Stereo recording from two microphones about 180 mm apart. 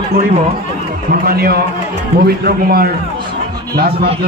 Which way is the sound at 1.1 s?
55° right (ahead or behind).